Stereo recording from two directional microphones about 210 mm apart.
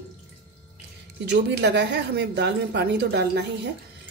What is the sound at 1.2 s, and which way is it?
Speech, 55° right (ahead or behind).